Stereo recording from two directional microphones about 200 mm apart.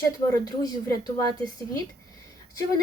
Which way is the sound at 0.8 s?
15° left (ahead or behind).